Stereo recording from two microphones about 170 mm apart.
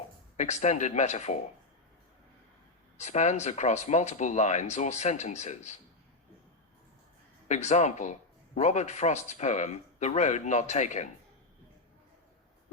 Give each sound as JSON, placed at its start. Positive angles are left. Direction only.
{"t": 0.3, "sound": "speech", "side_deg": 40}
{"t": 3.0, "sound": "speech", "side_deg": 40}
{"t": 7.4, "sound": "speech", "side_deg": 45}